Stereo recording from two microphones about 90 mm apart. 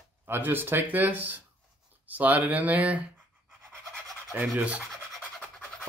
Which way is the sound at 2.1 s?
20° right (ahead or behind).